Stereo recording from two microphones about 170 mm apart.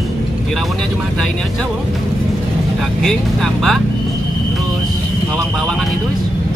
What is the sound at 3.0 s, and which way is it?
Vehicle, centre (ahead or behind).